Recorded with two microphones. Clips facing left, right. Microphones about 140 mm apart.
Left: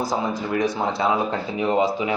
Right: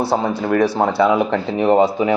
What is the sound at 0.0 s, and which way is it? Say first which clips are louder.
Speech: right 6 dB; 70° right (ahead or behind).